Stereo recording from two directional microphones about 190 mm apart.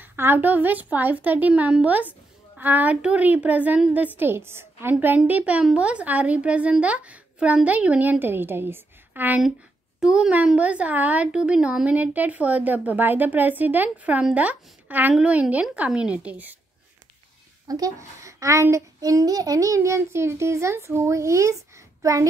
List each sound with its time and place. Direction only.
0.0 s a woman's voice: 10° right (ahead or behind)
17.6 s a woman's voice: 20° right (ahead or behind)